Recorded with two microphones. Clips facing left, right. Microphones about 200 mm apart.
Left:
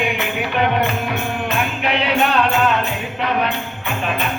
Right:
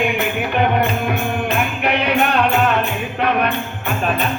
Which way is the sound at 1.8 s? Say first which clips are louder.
Right 1 dB; 55° right (ahead or behind).